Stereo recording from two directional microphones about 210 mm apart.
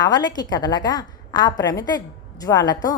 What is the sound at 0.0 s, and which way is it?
A woman's voice, 20° left (ahead or behind).